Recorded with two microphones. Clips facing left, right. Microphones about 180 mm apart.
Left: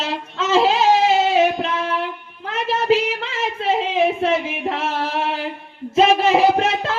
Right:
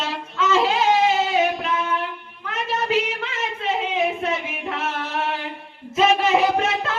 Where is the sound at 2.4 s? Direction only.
30° left (ahead or behind).